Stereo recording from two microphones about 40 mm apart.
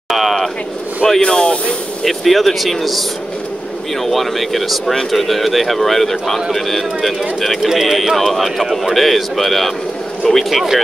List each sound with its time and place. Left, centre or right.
0.1 s speech: centre
1.0 s speech: centre
2.0 s speech: centre
7.6 s speech: centre